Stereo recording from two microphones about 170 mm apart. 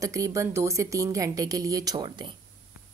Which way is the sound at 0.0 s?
20° right (ahead or behind).